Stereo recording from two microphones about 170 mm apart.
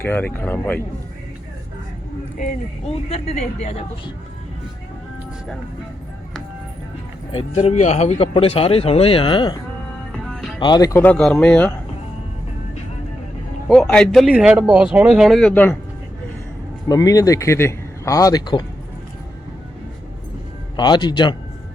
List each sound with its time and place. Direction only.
0.0 s speech: 10° left (ahead or behind)
3.1 s speech: 40° left (ahead or behind)
7.3 s speech: 40° left (ahead or behind)
10.1 s music: centre (ahead or behind)
10.6 s speech: 25° left (ahead or behind)
11.0 s speech: 5° left (ahead or behind)
13.7 s a man's voice: 5° left (ahead or behind)
16.9 s speech: 20° left (ahead or behind)
20.7 s speech: 25° left (ahead or behind)